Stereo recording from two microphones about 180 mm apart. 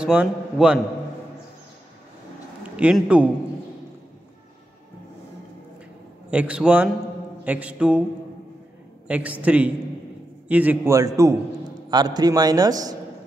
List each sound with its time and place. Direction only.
0.0 s a man's voice: 5° right (ahead or behind)
2.6 s a man's voice: 5° right (ahead or behind)
6.3 s a man's voice: 5° right (ahead or behind)
9.0 s a man's voice: 10° right (ahead or behind)